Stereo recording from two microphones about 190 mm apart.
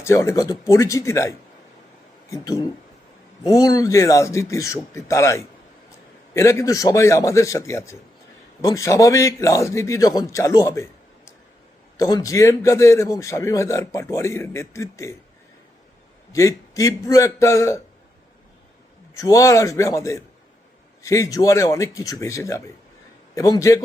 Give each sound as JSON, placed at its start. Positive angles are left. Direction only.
{"t": 0.0, "sound": "a man's voice", "side_deg": 15}
{"t": 2.3, "sound": "a man's voice", "side_deg": 20}
{"t": 11.9, "sound": "a man's voice", "side_deg": 20}
{"t": 16.3, "sound": "a man's voice", "side_deg": 15}
{"t": 19.1, "sound": "a man's voice", "side_deg": 15}